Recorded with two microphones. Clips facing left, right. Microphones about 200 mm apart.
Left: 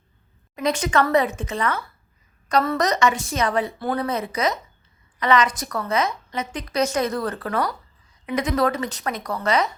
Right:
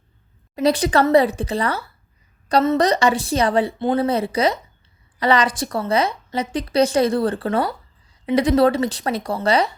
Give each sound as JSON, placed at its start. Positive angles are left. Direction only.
{"t": 0.5, "sound": "a woman's voice", "side_deg": -35}